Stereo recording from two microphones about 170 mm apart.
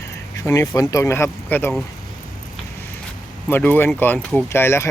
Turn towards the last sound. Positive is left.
turn(degrees=15)  # may be behind; listen again after turning